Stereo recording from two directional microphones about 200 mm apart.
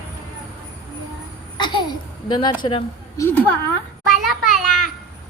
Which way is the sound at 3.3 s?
10° left (ahead or behind).